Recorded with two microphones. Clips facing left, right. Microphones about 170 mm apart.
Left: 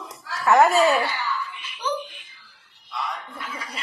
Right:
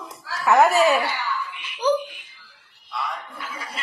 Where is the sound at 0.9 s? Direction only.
15° right (ahead or behind).